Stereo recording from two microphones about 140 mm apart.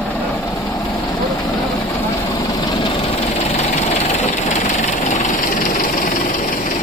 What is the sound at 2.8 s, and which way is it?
Engine, 40° left (ahead or behind).